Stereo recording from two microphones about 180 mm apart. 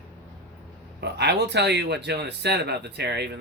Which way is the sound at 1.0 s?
70° right (ahead or behind).